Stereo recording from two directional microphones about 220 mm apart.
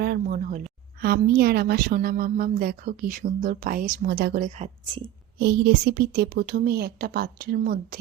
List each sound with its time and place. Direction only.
0.0 s a woman's voice: 45° right (ahead or behind); by 5.1 s 25° right (ahead or behind)
5.4 s a woman's voice: 45° right (ahead or behind)